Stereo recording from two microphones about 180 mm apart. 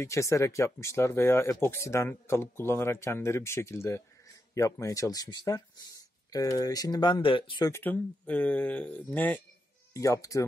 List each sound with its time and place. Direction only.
0.0 s speech: 15° left (ahead or behind)
7.7 s speech: 10° left (ahead or behind)